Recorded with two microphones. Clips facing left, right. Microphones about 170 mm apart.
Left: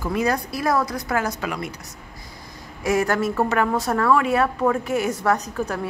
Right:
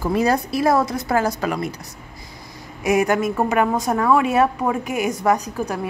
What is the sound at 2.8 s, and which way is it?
A woman's voice, 20° right (ahead or behind).